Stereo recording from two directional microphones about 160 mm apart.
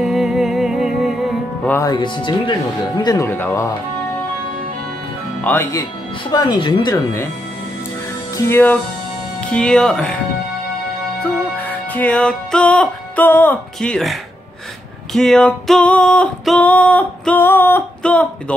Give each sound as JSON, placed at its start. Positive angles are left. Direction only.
{"t": 0.0, "sound": "music", "side_deg": 0}
{"t": 1.7, "sound": "speech", "side_deg": 20}
{"t": 3.3, "sound": "music", "side_deg": 15}
{"t": 5.4, "sound": "speech", "side_deg": 10}
{"t": 6.3, "sound": "speech", "side_deg": 30}
{"t": 8.4, "sound": "music", "side_deg": 15}
{"t": 9.4, "sound": "speech", "side_deg": 5}
{"t": 11.2, "sound": "music", "side_deg": 10}
{"t": 15.1, "sound": "music", "side_deg": 5}